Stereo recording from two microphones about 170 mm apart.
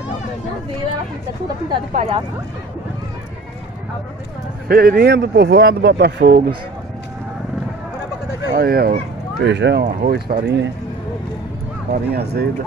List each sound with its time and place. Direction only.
2.0 s speech: 35° right (ahead or behind)
4.6 s speech: 60° right (ahead or behind)
8.5 s speech: 60° right (ahead or behind)
9.4 s speech: 90° right
10.0 s speech: 70° right (ahead or behind)
11.9 s speech: 70° right (ahead or behind)